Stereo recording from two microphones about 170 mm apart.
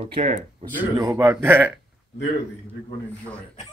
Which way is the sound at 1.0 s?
20° right (ahead or behind).